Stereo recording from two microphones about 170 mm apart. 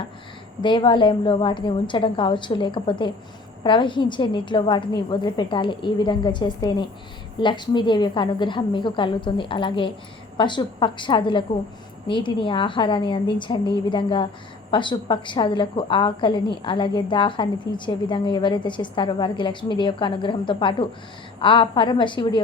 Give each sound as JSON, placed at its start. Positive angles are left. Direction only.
{"t": 0.6, "sound": "a woman's voice", "side_deg": 30}